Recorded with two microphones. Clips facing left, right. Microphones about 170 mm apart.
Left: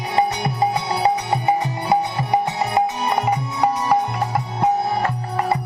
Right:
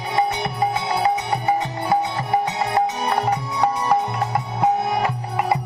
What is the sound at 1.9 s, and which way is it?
Music, 15° left (ahead or behind).